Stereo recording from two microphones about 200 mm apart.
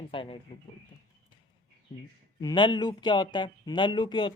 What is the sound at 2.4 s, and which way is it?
Speech, 20° left (ahead or behind).